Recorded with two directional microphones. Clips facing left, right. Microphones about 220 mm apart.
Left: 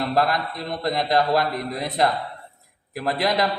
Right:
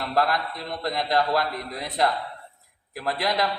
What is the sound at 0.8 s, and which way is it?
A man's voice, 15° left (ahead or behind).